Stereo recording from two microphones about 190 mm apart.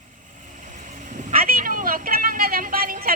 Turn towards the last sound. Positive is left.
turn(degrees=-50)  # may be behind; listen again after turning